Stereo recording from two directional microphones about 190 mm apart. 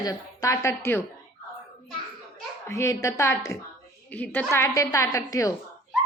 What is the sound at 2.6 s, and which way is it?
A woman's voice, 15° left (ahead or behind).